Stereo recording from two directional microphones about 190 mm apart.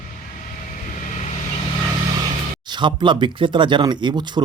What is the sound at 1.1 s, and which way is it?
Vehicle, 35° left (ahead or behind).